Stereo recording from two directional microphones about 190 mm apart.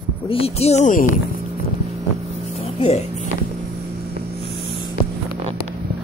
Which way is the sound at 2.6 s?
35° left (ahead or behind).